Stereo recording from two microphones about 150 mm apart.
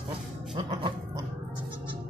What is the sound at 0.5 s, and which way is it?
Dog, 35° right (ahead or behind).